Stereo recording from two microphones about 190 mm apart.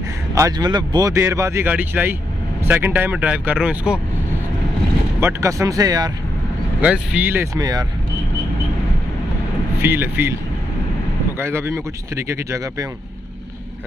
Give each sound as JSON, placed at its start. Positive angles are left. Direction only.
{"t": 0.3, "sound": "speech", "side_deg": -20}
{"t": 5.2, "sound": "speech", "side_deg": -15}
{"t": 6.8, "sound": "speech", "side_deg": -5}
{"t": 9.8, "sound": "speech", "side_deg": -10}
{"t": 11.3, "sound": "speech", "side_deg": -15}